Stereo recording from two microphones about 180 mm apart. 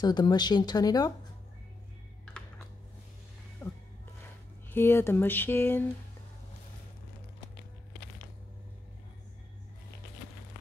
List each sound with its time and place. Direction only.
0.0 s speech: 20° left (ahead or behind)
3.6 s music: 15° left (ahead or behind)
4.6 s a sound: 10° left (ahead or behind)